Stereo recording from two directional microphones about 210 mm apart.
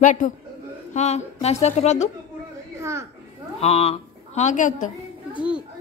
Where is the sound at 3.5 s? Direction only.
30° left (ahead or behind).